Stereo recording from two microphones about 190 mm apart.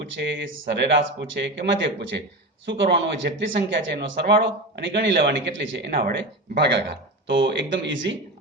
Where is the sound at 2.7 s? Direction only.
65° right (ahead or behind).